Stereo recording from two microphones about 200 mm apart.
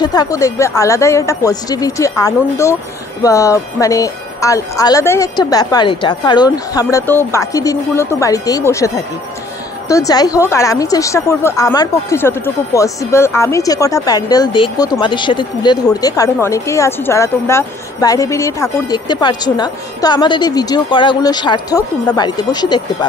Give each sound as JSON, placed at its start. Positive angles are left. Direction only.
{"t": 0.0, "sound": "a woman's voice", "side_deg": 20}